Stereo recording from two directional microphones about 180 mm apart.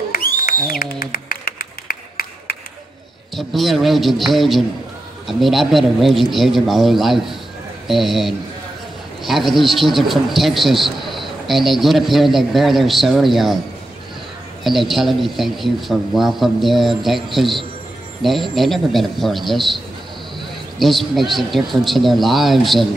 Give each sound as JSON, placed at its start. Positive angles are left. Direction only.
{"t": 0.1, "sound": "a sound", "side_deg": 55}
{"t": 3.3, "sound": "a man's voice", "side_deg": 0}
{"t": 14.6, "sound": "a man's voice", "side_deg": 0}
{"t": 20.8, "sound": "a man's voice", "side_deg": 0}